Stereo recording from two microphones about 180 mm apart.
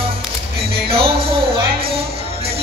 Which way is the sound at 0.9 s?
30° right (ahead or behind).